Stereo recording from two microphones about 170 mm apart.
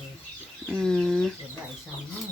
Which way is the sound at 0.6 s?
5° left (ahead or behind).